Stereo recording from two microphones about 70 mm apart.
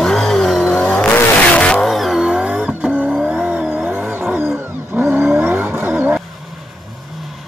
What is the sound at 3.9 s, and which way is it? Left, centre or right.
Vehicle, right.